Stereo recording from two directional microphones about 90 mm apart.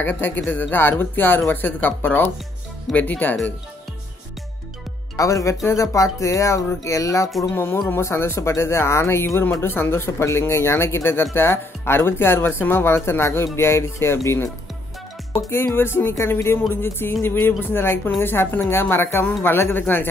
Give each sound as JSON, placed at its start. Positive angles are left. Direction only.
{"t": 0.0, "sound": "speech", "side_deg": 20}
{"t": 5.1, "sound": "speech", "side_deg": 35}
{"t": 15.5, "sound": "speech", "side_deg": 25}